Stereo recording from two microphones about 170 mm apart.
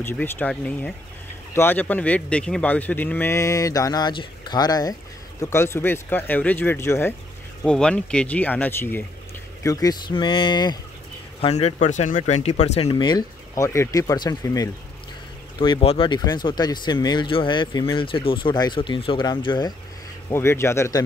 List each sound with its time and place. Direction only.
0.0 s a man's voice: 10° left (ahead or behind)
11.4 s speech: 40° left (ahead or behind)
13.0 s speech: 20° left (ahead or behind)
15.6 s speech: 30° left (ahead or behind)
20.2 s a man's voice: 15° left (ahead or behind)